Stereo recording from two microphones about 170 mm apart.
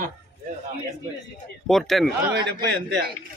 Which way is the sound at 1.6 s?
Centre (ahead or behind).